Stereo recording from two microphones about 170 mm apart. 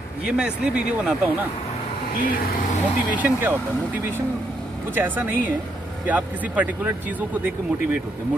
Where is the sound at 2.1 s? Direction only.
55° left (ahead or behind).